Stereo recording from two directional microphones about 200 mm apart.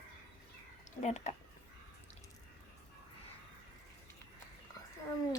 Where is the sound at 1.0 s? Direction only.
35° left (ahead or behind).